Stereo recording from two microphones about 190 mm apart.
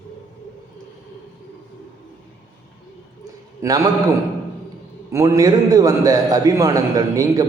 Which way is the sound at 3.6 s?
20° right (ahead or behind).